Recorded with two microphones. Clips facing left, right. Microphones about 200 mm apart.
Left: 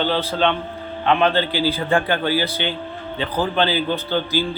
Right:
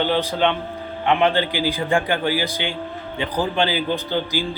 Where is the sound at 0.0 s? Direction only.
15° right (ahead or behind).